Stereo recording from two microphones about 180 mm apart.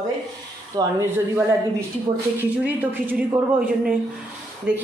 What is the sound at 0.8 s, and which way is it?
Speech, 20° right (ahead or behind).